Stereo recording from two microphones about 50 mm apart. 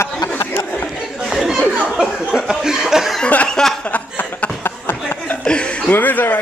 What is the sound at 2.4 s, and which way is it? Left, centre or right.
Chuckle, centre.